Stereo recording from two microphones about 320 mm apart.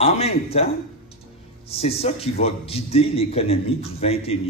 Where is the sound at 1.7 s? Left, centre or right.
Centre.